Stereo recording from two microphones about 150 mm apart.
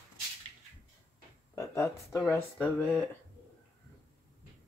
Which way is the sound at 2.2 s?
10° left (ahead or behind).